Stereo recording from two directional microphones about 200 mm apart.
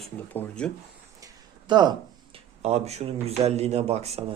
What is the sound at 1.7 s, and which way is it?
Speech, 20° right (ahead or behind).